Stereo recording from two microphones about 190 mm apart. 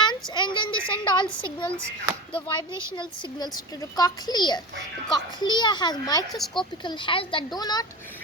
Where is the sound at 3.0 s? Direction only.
25° left (ahead or behind).